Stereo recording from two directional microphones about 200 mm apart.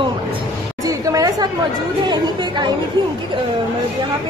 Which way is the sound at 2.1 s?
20° right (ahead or behind).